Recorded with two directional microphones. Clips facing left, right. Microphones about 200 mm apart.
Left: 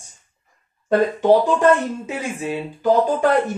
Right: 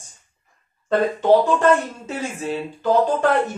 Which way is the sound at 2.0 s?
10° left (ahead or behind).